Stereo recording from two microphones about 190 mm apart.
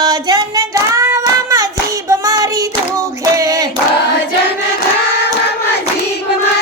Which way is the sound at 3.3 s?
20° right (ahead or behind).